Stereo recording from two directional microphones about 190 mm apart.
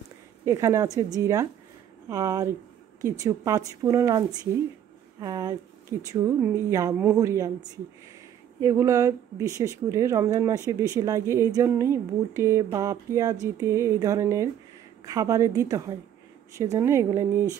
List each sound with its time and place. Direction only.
0.5 s a woman's voice: 15° right (ahead or behind)